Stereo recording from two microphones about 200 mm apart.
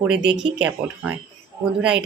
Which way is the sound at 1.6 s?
5° right (ahead or behind).